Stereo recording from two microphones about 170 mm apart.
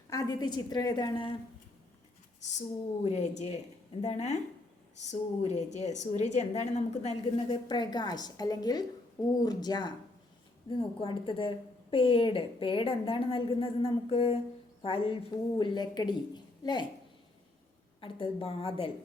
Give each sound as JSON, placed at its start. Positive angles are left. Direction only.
{"t": 0.1, "sound": "speech", "side_deg": 20}
{"t": 3.0, "sound": "a woman's voice", "side_deg": 40}
{"t": 18.0, "sound": "a woman's voice", "side_deg": 30}